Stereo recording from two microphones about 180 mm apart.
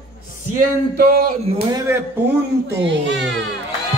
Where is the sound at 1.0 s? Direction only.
55° right (ahead or behind).